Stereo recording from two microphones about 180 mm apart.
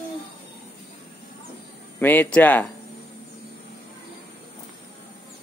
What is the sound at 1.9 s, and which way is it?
Speech, 10° left (ahead or behind).